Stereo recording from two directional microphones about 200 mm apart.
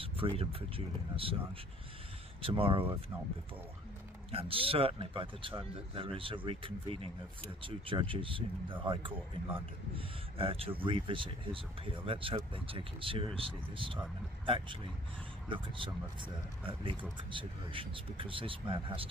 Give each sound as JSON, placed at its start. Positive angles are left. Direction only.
{"t": 0.0, "sound": "speech", "side_deg": -30}
{"t": 2.4, "sound": "speech", "side_deg": -25}
{"t": 4.3, "sound": "speech", "side_deg": -25}